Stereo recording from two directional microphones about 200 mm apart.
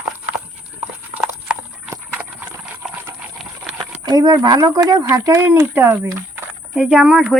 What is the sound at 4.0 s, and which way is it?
Speech, 20° right (ahead or behind).